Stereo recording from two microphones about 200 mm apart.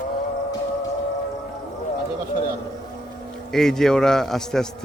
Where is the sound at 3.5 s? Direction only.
Centre (ahead or behind).